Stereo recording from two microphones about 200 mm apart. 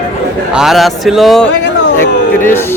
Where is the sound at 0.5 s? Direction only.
Centre (ahead or behind).